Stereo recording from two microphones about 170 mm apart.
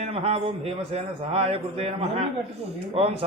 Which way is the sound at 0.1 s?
35° right (ahead or behind).